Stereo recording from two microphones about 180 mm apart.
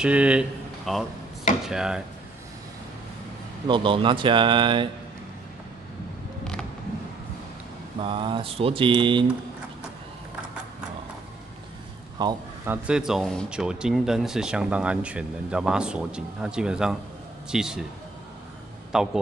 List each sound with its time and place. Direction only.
0.0 s speech: 5° right (ahead or behind)
3.6 s speech: 25° right (ahead or behind)
8.0 s speech: 30° right (ahead or behind)
12.2 s speech: 20° right (ahead or behind)
12.6 s speech: 5° right (ahead or behind)
18.9 s speech: centre (ahead or behind)